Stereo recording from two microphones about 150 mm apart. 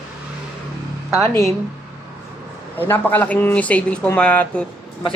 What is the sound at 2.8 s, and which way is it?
A man's voice, 15° left (ahead or behind).